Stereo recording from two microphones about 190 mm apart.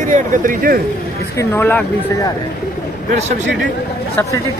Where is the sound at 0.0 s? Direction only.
40° right (ahead or behind).